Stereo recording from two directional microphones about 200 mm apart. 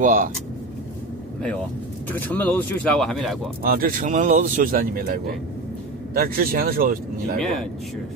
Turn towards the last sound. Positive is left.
turn(degrees=5)  # may be behind; listen again after turning